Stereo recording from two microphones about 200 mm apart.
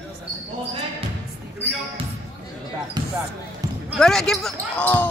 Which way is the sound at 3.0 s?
20° right (ahead or behind).